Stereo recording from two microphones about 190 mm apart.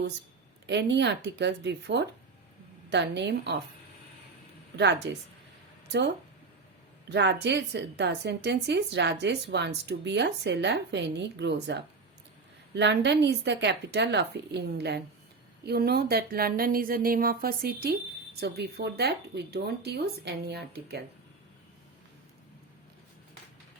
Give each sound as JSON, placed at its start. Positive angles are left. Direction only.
{"t": 0.7, "sound": "speech", "side_deg": -65}
{"t": 4.8, "sound": "speech", "side_deg": -65}
{"t": 7.1, "sound": "speech", "side_deg": -65}